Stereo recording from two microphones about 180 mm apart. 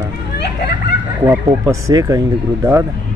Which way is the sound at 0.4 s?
70° left (ahead or behind).